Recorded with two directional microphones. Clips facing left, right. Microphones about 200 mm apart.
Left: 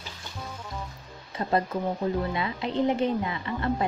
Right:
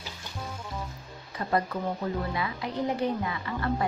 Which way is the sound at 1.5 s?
25° left (ahead or behind).